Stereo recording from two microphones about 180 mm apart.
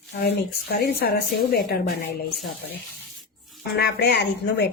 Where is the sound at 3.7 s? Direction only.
65° left (ahead or behind).